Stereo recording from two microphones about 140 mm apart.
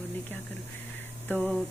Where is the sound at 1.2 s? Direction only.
10° left (ahead or behind).